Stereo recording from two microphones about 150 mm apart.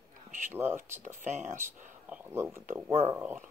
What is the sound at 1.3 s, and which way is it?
Speech, 55° right (ahead or behind).